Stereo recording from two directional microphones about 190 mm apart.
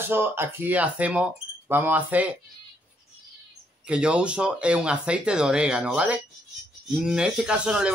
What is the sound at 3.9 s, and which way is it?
Speech, 5° right (ahead or behind).